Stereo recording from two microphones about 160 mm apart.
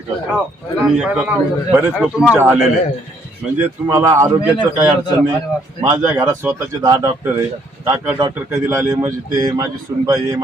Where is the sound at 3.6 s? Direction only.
20° right (ahead or behind).